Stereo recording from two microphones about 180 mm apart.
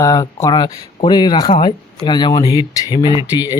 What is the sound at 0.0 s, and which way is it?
Speech, 20° left (ahead or behind).